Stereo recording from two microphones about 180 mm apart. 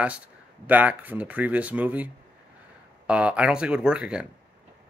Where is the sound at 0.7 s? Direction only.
10° right (ahead or behind).